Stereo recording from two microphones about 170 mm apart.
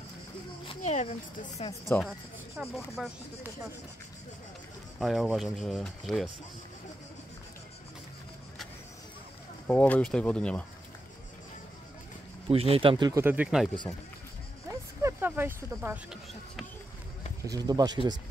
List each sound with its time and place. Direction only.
0.7 s speech: 40° left (ahead or behind)
1.7 s speech: 15° left (ahead or behind)
2.6 s speech: 10° right (ahead or behind)
3.0 s rub: 5° right (ahead or behind)
5.0 s rub: centre (ahead or behind)
9.7 s speech: 10° left (ahead or behind)
12.4 s speech: 35° right (ahead or behind)
13.2 s speech: 10° right (ahead or behind)
14.7 s speech: 15° right (ahead or behind)
17.5 s speech: 20° right (ahead or behind)